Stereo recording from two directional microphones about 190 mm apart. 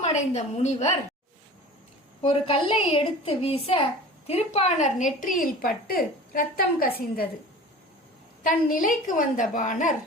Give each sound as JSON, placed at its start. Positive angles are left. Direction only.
{"t": 0.0, "sound": "a woman's voice", "side_deg": 35}
{"t": 2.2, "sound": "a woman's voice", "side_deg": 30}
{"t": 8.4, "sound": "a woman's voice", "side_deg": 45}